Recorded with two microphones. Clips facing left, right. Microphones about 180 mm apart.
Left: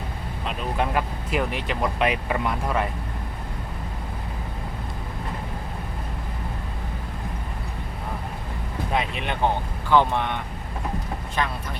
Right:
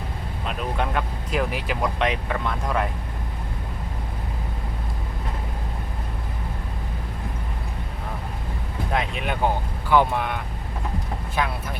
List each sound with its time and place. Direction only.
0.4 s speech: 5° left (ahead or behind)
8.9 s speech: centre (ahead or behind)